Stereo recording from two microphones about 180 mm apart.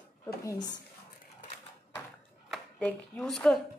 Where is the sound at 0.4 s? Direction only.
20° left (ahead or behind).